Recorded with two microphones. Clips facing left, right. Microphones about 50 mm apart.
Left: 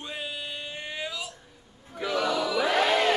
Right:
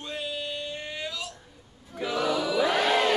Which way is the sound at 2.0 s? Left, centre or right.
Centre.